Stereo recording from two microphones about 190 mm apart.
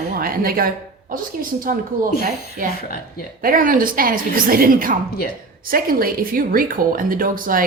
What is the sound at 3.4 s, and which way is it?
Speech, 50° right (ahead or behind).